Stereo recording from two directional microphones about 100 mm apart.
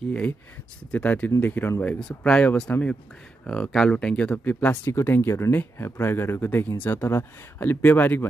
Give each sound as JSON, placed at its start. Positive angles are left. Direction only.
{"t": 0.0, "sound": "speech", "side_deg": 15}
{"t": 2.0, "sound": "speech", "side_deg": 5}